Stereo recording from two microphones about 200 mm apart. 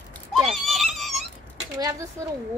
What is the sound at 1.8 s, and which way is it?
Speech, 15° right (ahead or behind).